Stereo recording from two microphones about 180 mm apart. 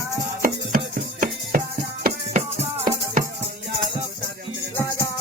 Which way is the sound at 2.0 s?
50° right (ahead or behind).